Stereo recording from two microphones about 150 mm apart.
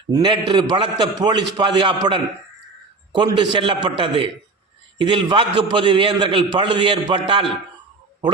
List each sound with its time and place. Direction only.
0.1 s a man's voice: 30° right (ahead or behind)